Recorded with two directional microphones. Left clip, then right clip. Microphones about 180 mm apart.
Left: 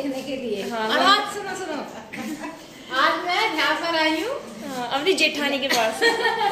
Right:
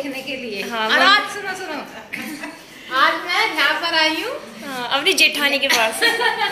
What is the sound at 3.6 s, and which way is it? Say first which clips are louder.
A woman's voice: right 4 dB; 10° right (ahead or behind).